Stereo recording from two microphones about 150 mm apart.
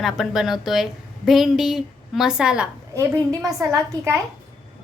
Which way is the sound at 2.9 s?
20° right (ahead or behind).